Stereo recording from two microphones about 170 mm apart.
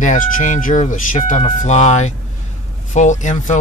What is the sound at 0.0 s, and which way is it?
Speech, 50° left (ahead or behind).